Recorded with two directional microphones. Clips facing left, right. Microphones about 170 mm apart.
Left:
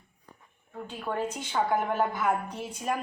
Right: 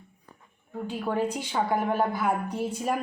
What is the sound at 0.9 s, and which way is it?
A woman's voice, 10° right (ahead or behind).